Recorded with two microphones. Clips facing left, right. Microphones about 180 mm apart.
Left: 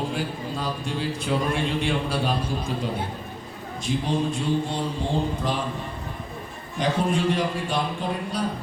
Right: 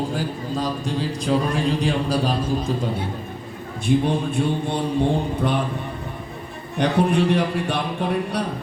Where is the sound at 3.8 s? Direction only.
60° right (ahead or behind).